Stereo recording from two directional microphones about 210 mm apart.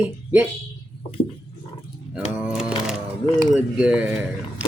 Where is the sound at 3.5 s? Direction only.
5° right (ahead or behind).